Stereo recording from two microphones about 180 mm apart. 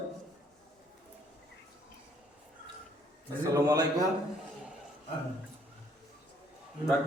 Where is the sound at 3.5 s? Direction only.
20° right (ahead or behind).